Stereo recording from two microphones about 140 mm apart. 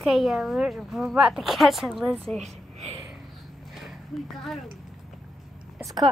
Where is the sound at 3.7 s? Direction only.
Centre (ahead or behind).